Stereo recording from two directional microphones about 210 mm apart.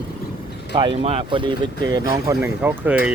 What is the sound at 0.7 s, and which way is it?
Speech, 20° right (ahead or behind).